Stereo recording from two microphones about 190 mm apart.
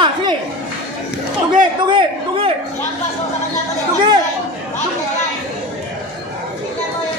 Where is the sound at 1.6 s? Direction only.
25° right (ahead or behind).